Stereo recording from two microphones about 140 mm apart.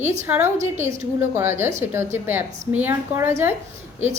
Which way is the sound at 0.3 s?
15° right (ahead or behind).